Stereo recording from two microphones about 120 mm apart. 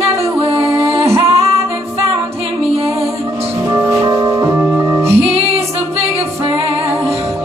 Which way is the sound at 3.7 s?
25° right (ahead or behind).